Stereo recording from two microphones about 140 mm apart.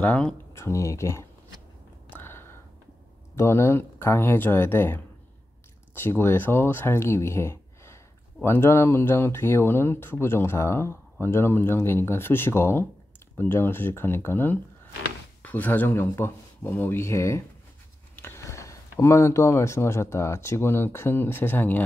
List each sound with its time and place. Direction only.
0.0 s speech: 10° left (ahead or behind)
0.5 s speech: 20° left (ahead or behind)
2.1 s a sound: 15° left (ahead or behind)
3.3 s speech: 20° left (ahead or behind)